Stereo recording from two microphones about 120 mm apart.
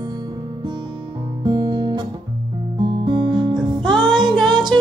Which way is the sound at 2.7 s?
40° right (ahead or behind).